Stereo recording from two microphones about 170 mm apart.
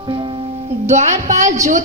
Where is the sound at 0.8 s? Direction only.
45° right (ahead or behind).